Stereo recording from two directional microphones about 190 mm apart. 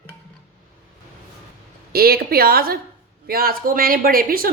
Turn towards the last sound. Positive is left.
turn(degrees=-50)  # may be behind; listen again after turning